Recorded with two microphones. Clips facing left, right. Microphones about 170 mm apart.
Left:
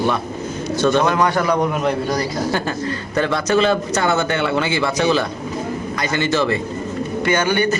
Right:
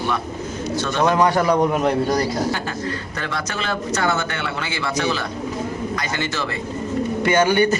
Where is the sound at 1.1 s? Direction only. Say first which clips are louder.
Right 1 dB; 30° right (ahead or behind).